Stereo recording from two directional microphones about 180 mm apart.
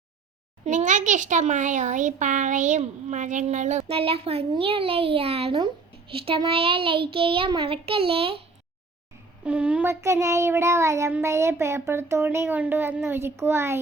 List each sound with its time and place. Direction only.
0.6 s a child's voice: 40° right (ahead or behind)
9.4 s child singing: 5° right (ahead or behind)